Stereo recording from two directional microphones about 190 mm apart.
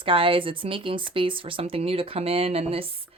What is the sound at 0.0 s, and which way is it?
Speech, 30° right (ahead or behind).